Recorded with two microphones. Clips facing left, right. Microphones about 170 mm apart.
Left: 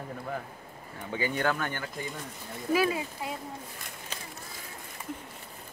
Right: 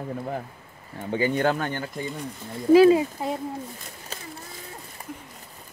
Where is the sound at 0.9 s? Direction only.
40° right (ahead or behind).